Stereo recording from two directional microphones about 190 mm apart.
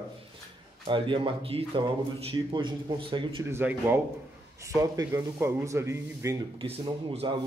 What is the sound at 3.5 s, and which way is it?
Speech, 10° right (ahead or behind).